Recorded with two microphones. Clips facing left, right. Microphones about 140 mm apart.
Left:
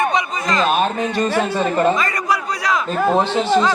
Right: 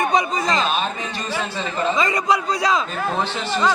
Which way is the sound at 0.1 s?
35° right (ahead or behind).